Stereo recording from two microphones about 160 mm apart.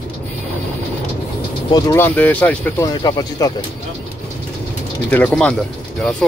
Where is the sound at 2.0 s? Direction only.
10° left (ahead or behind).